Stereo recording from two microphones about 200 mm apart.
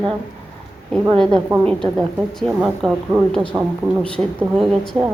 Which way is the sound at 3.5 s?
20° right (ahead or behind).